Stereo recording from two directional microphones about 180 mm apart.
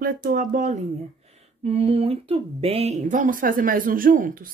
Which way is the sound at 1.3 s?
35° right (ahead or behind).